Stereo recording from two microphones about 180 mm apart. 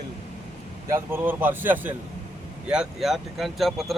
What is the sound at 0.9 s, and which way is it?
A man's voice, 10° right (ahead or behind).